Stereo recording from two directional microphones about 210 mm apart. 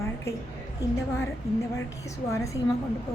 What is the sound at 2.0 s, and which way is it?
Speech, 15° left (ahead or behind).